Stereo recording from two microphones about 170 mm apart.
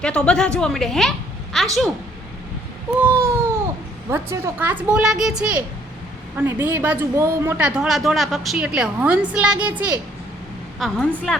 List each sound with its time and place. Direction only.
0.0 s a woman's voice: 5° left (ahead or behind)
3.0 s a sound: 10° right (ahead or behind)
4.1 s a woman's voice: 15° right (ahead or behind)
10.8 s a woman's voice: centre (ahead or behind)